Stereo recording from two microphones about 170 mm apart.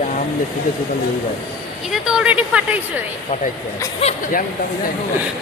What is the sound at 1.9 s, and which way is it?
Speech, 5° right (ahead or behind).